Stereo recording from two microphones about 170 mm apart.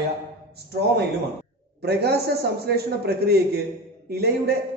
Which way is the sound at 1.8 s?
70° right (ahead or behind).